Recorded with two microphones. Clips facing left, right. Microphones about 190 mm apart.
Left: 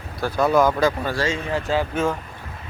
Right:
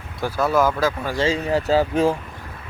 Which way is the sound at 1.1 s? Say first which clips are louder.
Right 3 dB; 35° right (ahead or behind).